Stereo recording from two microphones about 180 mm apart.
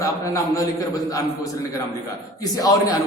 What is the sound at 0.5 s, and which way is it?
A man's voice, 20° left (ahead or behind).